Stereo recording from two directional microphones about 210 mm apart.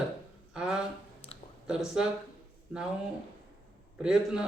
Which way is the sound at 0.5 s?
5° right (ahead or behind).